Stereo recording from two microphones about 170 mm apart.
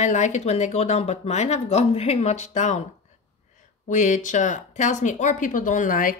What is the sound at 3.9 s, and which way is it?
Speech, 45° left (ahead or behind).